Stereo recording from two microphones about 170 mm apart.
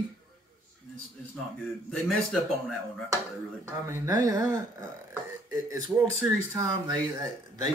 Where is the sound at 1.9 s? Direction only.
5° left (ahead or behind).